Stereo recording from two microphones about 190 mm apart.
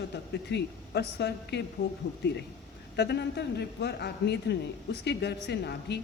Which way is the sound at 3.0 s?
60° left (ahead or behind).